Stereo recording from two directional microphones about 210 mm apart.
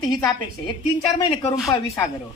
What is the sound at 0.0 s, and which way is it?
Speech, 20° left (ahead or behind).